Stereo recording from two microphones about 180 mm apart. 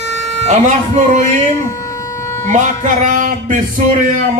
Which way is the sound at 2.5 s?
45° right (ahead or behind).